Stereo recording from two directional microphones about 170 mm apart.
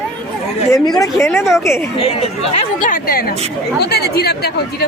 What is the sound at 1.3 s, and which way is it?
Speech, centre (ahead or behind).